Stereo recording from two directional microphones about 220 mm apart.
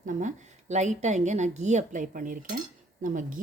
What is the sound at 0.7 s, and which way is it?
A woman's voice, 30° right (ahead or behind).